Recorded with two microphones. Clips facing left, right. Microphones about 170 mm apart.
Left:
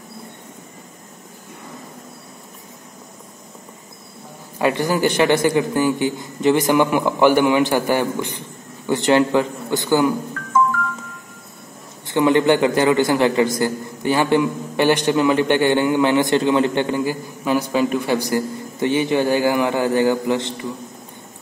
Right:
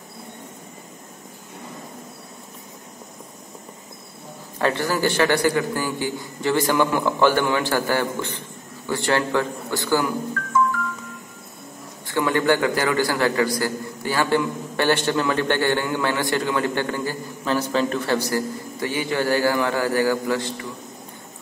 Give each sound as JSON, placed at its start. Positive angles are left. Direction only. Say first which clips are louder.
{"t": 4.6, "sound": "a man's voice", "louder": "left 3 dB", "side_deg": 15}
{"t": 12.1, "sound": "a man's voice", "louder": "left 5 dB", "side_deg": 20}